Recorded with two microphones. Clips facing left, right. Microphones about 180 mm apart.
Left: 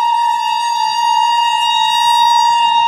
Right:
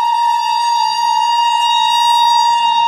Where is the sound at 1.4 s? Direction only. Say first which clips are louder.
Right 1 dB; 45° left (ahead or behind).